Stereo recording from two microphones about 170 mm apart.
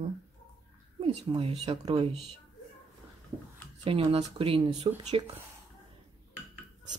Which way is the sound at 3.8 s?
35° right (ahead or behind).